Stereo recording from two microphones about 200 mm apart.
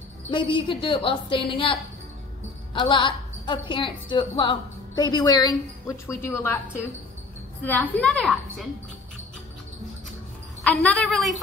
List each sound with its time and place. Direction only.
0.3 s a woman's voice: 25° left (ahead or behind)
7.6 s a woman's voice: 10° left (ahead or behind)
10.6 s a woman's voice: 5° left (ahead or behind)